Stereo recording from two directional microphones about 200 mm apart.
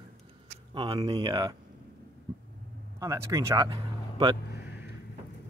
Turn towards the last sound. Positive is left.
turn(degrees=-20)  # may be behind; listen again after turning